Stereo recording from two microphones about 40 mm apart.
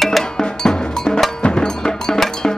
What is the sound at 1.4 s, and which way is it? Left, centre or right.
Music, centre.